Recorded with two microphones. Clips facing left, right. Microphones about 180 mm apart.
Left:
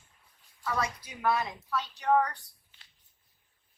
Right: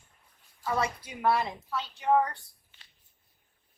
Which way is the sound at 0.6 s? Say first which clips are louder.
Right 3 dB; 25° right (ahead or behind).